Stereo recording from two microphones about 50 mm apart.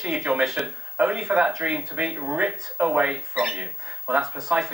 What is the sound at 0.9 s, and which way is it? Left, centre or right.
Speech, right.